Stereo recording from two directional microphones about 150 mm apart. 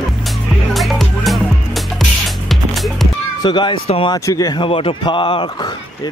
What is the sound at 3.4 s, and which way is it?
Speech, 30° left (ahead or behind).